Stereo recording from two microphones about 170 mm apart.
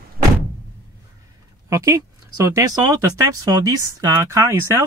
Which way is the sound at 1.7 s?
20° right (ahead or behind).